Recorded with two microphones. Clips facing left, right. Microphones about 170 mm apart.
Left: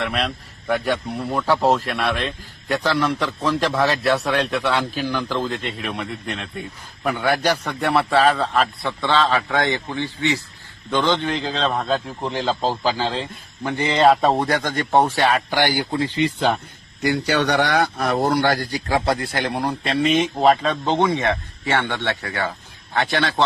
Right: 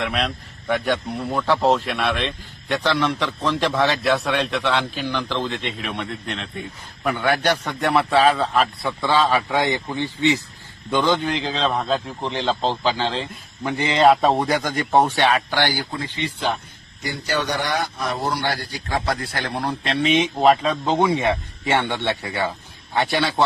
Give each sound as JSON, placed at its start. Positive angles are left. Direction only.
{"t": 0.0, "sound": "a man's voice", "side_deg": 0}
{"t": 11.0, "sound": "a man's voice", "side_deg": 0}
{"t": 15.4, "sound": "speech", "side_deg": 10}
{"t": 17.0, "sound": "a man's voice", "side_deg": 65}
{"t": 19.0, "sound": "a man's voice", "side_deg": 25}